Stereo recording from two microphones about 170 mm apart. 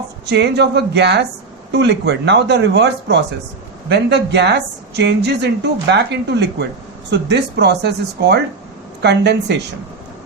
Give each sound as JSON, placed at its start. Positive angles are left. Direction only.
{"t": 0.3, "sound": "speech", "side_deg": -80}